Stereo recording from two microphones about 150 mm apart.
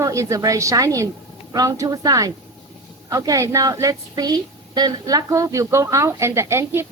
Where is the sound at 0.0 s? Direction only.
20° right (ahead or behind).